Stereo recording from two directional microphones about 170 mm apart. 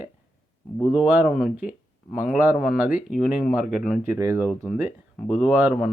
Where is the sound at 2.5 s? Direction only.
55° left (ahead or behind).